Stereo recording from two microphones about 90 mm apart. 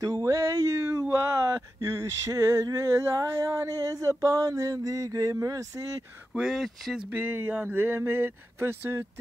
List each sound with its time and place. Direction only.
0.0 s a sound: 40° right (ahead or behind)
6.3 s speech: 5° right (ahead or behind)
7.1 s speech: 20° right (ahead or behind)